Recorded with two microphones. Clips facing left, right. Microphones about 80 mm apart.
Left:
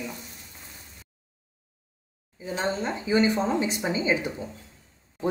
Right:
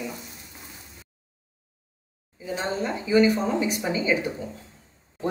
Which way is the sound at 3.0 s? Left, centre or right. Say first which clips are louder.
Right 3 dB; left.